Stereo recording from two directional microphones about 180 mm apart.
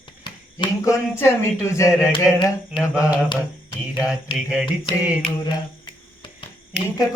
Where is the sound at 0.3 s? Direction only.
25° left (ahead or behind).